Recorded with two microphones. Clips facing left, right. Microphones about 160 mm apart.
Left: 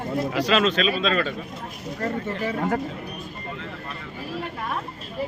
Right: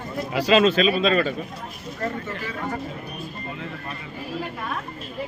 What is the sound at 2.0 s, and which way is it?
Speech, 35° left (ahead or behind).